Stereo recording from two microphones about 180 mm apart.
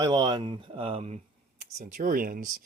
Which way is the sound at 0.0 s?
20° right (ahead or behind).